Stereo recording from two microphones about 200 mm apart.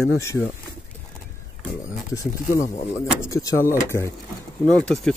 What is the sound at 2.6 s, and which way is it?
Speech, 30° left (ahead or behind).